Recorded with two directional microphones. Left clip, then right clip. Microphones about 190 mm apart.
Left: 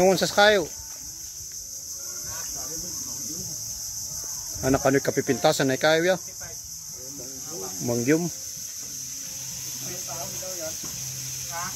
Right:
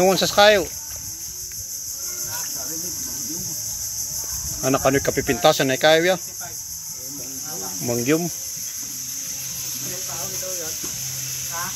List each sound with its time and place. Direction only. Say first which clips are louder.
0.0 s cricket: right 4 dB; 20° left (ahead or behind)
4.6 s speech: right 3 dB; 20° left (ahead or behind)
7.8 s cricket: right 2 dB; 20° left (ahead or behind)